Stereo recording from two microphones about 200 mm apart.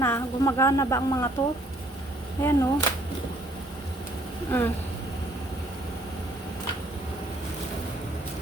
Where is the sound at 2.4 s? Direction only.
15° left (ahead or behind).